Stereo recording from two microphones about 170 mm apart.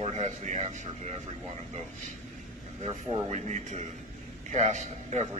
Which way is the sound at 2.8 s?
40° right (ahead or behind).